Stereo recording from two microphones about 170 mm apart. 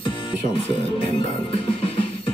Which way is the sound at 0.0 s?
30° left (ahead or behind).